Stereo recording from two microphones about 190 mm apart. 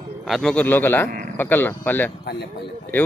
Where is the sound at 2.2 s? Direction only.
55° left (ahead or behind).